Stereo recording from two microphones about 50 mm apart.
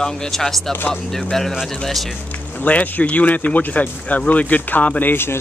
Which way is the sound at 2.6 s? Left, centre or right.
Left.